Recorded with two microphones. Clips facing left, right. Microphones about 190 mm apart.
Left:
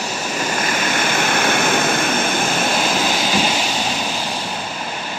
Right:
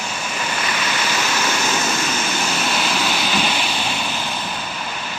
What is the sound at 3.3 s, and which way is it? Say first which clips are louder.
Vehicle: left 3 dB; 35° left (ahead or behind).